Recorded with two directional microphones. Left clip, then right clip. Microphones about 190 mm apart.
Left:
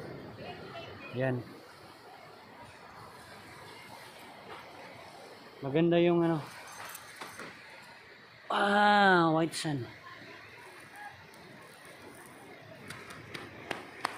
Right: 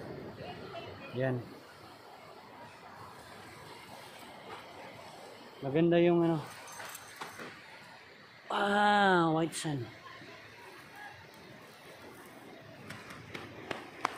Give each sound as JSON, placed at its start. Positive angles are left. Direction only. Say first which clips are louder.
{"t": 1.2, "sound": "speech", "louder": "left 1 dB", "side_deg": 25}
{"t": 5.7, "sound": "speech", "louder": "even", "side_deg": 25}
{"t": 8.5, "sound": "speech", "louder": "left 2 dB", "side_deg": 30}
{"t": 12.8, "sound": "run", "louder": "left 1 dB", "side_deg": 5}